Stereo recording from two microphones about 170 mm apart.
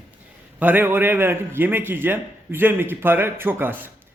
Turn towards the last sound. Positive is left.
turn(degrees=-10)  # may be behind; listen again after turning